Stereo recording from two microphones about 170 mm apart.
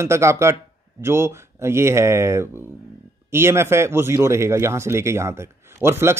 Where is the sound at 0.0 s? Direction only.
15° right (ahead or behind).